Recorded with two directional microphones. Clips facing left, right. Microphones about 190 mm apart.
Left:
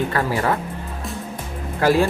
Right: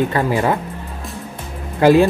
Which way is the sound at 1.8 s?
20° right (ahead or behind).